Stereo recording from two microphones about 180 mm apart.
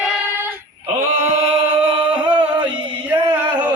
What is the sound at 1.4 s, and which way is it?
Chant, 30° right (ahead or behind).